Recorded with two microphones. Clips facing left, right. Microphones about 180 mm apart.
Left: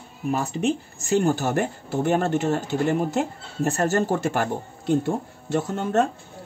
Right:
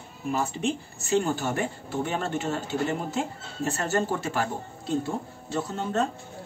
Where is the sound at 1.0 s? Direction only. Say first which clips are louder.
Left 4 dB; 45° left (ahead or behind).